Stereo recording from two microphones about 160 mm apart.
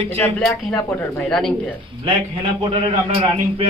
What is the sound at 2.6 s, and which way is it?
A man's voice, 35° right (ahead or behind).